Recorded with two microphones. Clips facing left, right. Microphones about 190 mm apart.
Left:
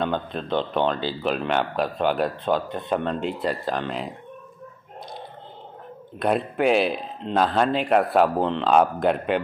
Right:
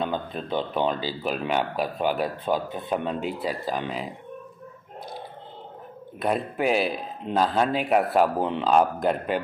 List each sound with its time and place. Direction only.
0.0 s speech: 5° right (ahead or behind)
6.1 s speech: centre (ahead or behind)